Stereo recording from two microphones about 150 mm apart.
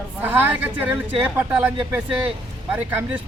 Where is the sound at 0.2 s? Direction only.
10° right (ahead or behind).